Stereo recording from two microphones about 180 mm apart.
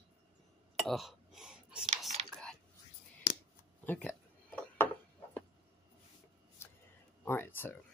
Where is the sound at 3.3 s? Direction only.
65° left (ahead or behind).